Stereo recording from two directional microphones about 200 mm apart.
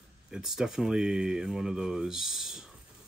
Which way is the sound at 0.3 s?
Centre (ahead or behind).